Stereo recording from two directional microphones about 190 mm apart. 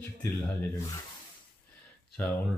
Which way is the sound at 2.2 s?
10° left (ahead or behind).